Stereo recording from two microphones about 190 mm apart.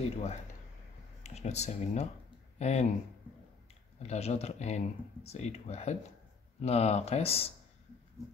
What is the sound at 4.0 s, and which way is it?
Speech, 35° left (ahead or behind).